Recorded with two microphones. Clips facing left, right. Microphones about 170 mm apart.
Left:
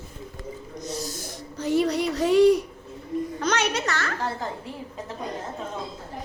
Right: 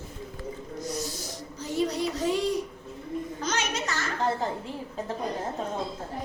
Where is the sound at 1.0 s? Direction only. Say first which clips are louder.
Left 1 dB; 50° left (ahead or behind); by 4.1 s 70° left (ahead or behind).